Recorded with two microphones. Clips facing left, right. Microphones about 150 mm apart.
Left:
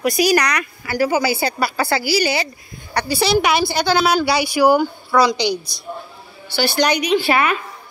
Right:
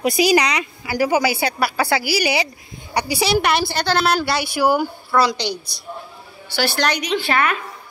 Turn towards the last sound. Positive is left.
turn(degrees=10)  # may be behind; listen again after turning